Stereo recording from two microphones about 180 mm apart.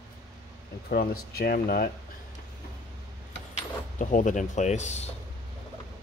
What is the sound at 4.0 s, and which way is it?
Speech, 45° left (ahead or behind).